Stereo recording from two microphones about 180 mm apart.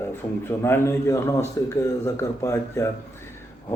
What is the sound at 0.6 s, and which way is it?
Speech, 15° left (ahead or behind).